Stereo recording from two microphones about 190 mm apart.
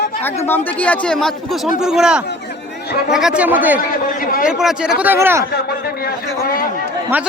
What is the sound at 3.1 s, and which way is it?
Speech, 5° right (ahead or behind).